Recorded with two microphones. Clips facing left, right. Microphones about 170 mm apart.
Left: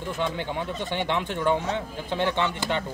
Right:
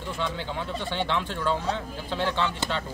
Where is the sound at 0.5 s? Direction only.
15° left (ahead or behind).